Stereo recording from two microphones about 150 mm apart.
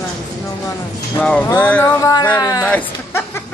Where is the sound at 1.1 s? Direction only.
10° left (ahead or behind).